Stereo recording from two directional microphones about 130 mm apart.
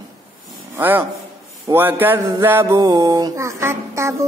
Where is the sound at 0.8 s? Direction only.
15° right (ahead or behind).